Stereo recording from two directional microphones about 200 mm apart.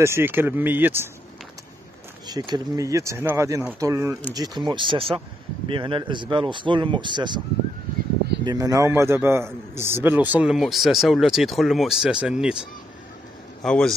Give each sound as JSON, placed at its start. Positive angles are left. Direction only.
{"t": 0.0, "sound": "speech", "side_deg": -10}
{"t": 2.2, "sound": "speech", "side_deg": -20}
{"t": 8.5, "sound": "a man's voice", "side_deg": -15}
{"t": 13.6, "sound": "a man's voice", "side_deg": 5}